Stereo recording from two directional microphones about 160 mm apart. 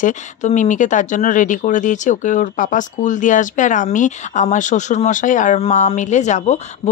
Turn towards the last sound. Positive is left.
turn(degrees=45)  # may be behind; listen again after turning